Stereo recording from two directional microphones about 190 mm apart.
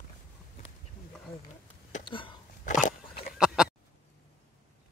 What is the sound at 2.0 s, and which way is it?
Speech, 25° left (ahead or behind).